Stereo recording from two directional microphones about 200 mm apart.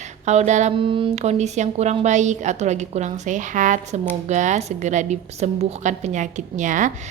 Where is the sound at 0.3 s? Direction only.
35° right (ahead or behind).